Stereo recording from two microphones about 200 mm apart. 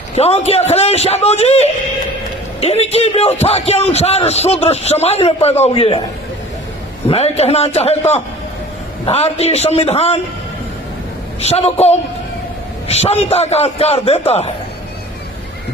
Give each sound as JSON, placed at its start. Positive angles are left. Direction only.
{"t": 0.2, "sound": "a man's voice", "side_deg": 30}
{"t": 7.1, "sound": "a man's voice", "side_deg": 30}
{"t": 11.3, "sound": "a man's voice", "side_deg": 30}